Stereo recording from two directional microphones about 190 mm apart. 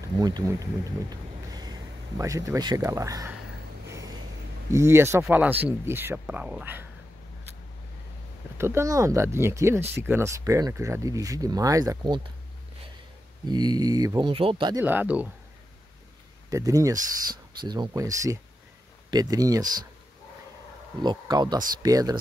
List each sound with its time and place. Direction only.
0.0 s speech: 20° right (ahead or behind)
3.9 s a sound: 20° right (ahead or behind)
4.7 s speech: 15° right (ahead or behind)
8.5 s speech: 15° right (ahead or behind)
13.5 s speech: 20° right (ahead or behind)
14.8 s speech: 10° right (ahead or behind)
16.4 s speech: 15° right (ahead or behind)
21.0 s speech: 20° right (ahead or behind)